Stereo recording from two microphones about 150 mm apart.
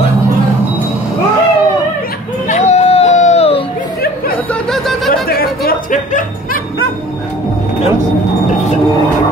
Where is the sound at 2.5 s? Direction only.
45° left (ahead or behind).